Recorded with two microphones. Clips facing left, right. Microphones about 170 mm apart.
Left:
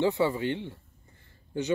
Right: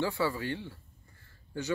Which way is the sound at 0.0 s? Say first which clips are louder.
Left 5 dB; 20° left (ahead or behind).